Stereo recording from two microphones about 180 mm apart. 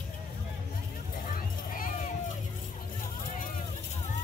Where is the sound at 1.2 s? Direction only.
50° left (ahead or behind).